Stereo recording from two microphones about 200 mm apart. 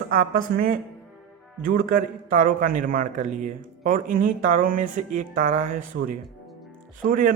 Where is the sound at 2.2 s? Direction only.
40° right (ahead or behind).